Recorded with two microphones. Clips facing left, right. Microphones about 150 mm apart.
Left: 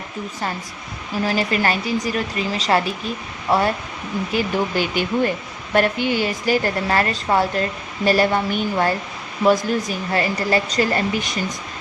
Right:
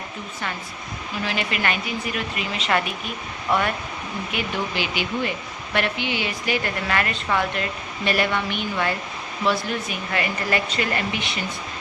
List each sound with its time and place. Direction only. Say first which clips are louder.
1.2 s a woman's voice: left 6 dB; 40° left (ahead or behind)